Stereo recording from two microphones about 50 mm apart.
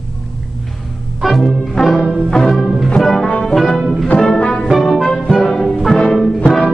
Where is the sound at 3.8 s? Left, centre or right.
Centre.